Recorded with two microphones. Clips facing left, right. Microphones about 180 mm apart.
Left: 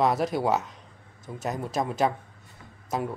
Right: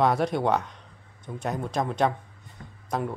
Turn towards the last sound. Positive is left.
turn(degrees=5)  # may be behind; listen again after turning